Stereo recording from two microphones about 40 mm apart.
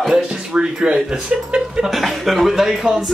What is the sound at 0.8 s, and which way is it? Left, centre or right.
Speech, centre.